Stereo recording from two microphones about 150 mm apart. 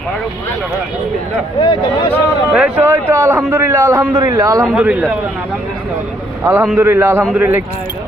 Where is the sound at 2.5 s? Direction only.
10° right (ahead or behind).